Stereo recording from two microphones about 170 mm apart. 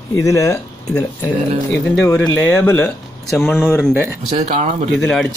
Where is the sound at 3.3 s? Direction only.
Centre (ahead or behind).